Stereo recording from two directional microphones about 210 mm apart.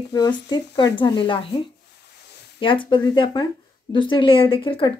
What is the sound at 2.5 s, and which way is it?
Speech, 25° left (ahead or behind).